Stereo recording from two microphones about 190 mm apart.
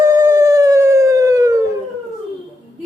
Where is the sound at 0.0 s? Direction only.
20° right (ahead or behind).